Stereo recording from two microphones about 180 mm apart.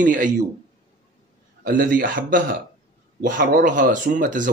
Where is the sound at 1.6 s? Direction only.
50° right (ahead or behind).